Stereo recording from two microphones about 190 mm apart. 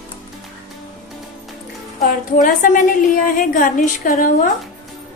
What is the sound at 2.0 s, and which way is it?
A woman's voice, 45° left (ahead or behind).